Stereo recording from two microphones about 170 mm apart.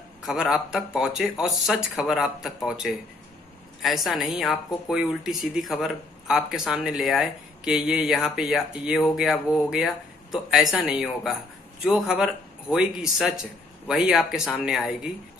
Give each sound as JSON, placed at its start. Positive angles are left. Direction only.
{"t": 0.2, "sound": "speech", "side_deg": -5}